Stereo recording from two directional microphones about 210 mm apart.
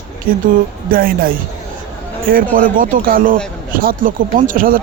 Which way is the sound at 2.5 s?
40° right (ahead or behind).